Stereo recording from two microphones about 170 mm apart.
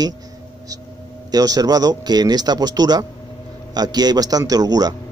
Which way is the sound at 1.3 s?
20° right (ahead or behind).